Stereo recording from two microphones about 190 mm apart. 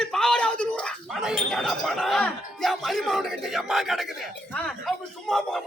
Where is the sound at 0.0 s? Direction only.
Centre (ahead or behind).